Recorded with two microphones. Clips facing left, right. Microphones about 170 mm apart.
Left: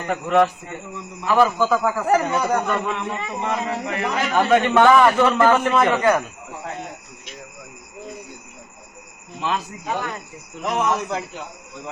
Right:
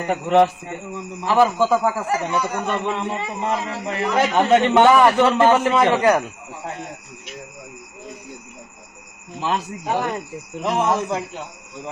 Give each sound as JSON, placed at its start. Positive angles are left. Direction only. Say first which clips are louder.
{"t": 0.1, "sound": "a man's voice", "louder": "right 2 dB", "side_deg": -30}
{"t": 2.0, "sound": "speech", "louder": "left 4 dB", "side_deg": 50}
{"t": 2.6, "sound": "a man's voice", "louder": "right 1 dB", "side_deg": -25}
{"t": 9.5, "sound": "speech", "louder": "right 3 dB", "side_deg": -35}